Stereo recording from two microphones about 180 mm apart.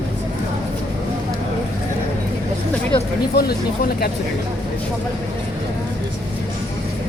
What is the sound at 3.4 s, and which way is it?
Speech, 60° left (ahead or behind).